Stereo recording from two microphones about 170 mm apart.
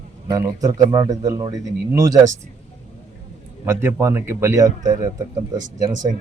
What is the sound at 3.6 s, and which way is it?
A man's voice, 15° right (ahead or behind).